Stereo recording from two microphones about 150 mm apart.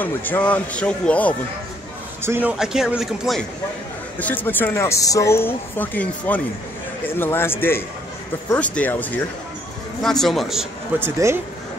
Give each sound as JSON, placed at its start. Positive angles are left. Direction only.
{"t": 0.0, "sound": "a woman's voice", "side_deg": 10}
{"t": 2.2, "sound": "speech", "side_deg": -15}
{"t": 2.6, "sound": "a man's voice", "side_deg": -5}
{"t": 4.2, "sound": "a woman's voice", "side_deg": 10}
{"t": 11.0, "sound": "speech", "side_deg": -20}